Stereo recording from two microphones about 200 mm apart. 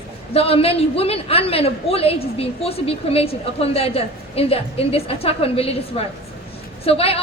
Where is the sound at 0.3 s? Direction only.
30° left (ahead or behind).